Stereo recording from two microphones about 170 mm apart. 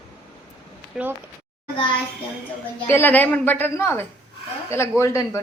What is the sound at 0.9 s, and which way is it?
Speech, 5° right (ahead or behind).